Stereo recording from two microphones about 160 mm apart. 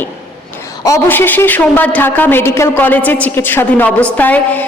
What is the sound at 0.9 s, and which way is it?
A woman's voice, 15° left (ahead or behind).